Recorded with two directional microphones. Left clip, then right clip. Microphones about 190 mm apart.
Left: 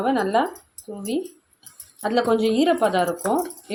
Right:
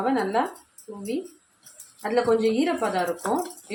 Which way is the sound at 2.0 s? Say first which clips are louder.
Left 1 dB; 35° left (ahead or behind).